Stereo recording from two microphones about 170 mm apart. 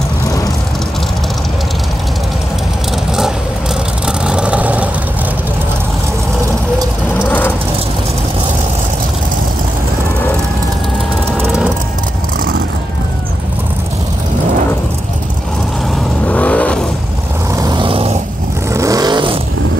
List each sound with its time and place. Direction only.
4.3 s vehicle: 5° right (ahead or behind)
7.2 s vehicle: 10° left (ahead or behind)
11.4 s vehicle: 5° right (ahead or behind)
16.3 s vehicle: 10° left (ahead or behind)
17.6 s vehicle: 25° right (ahead or behind)
18.7 s vehicle: 20° right (ahead or behind)